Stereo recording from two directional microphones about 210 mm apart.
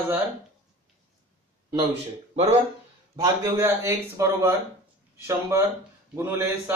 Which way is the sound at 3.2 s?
15° right (ahead or behind).